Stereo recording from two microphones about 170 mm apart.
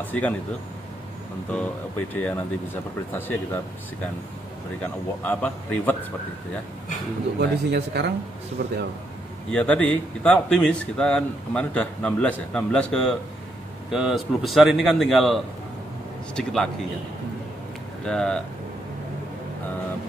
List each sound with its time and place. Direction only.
0.0 s speech: 10° left (ahead or behind)
1.5 s speech: 10° left (ahead or behind)
4.8 s speech: 10° left (ahead or behind)
7.3 s a man's voice: 75° right (ahead or behind)
9.5 s a man's voice: 5° left (ahead or behind)
18.0 s a man's voice: 5° left (ahead or behind)